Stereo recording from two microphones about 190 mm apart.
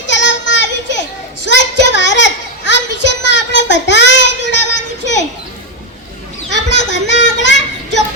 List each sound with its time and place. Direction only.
0.0 s children playing: 70° left (ahead or behind)
1.5 s a sound: 70° left (ahead or behind)
6.7 s children playing: 70° left (ahead or behind)